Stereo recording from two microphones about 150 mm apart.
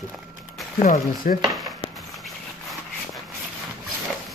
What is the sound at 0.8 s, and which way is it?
Speech, 65° left (ahead or behind).